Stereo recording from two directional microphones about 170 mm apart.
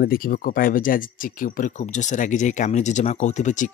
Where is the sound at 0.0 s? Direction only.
60° left (ahead or behind).